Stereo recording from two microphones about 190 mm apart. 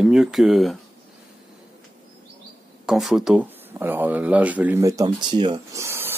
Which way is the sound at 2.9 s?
Centre (ahead or behind).